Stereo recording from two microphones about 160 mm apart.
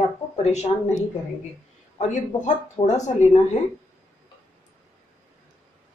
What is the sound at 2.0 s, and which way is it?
Speech, 50° left (ahead or behind).